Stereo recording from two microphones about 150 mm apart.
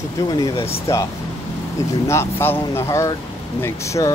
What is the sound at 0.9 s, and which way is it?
Speech, 20° left (ahead or behind).